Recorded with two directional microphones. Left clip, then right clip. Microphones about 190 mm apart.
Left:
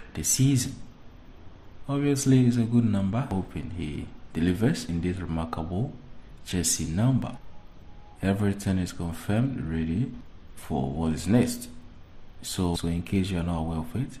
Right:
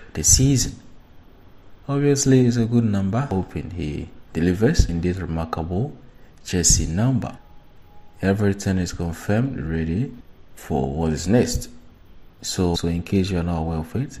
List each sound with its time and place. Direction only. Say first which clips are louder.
0.1 s speech: right 8 dB; 25° right (ahead or behind)
1.9 s speech: right 6 dB; 25° right (ahead or behind)